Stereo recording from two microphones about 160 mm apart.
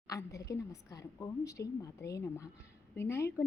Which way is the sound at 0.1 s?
20° left (ahead or behind).